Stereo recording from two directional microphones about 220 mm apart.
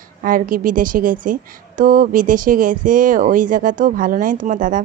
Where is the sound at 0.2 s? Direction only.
40° right (ahead or behind).